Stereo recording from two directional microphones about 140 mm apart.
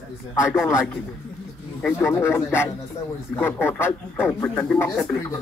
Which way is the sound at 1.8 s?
15° left (ahead or behind).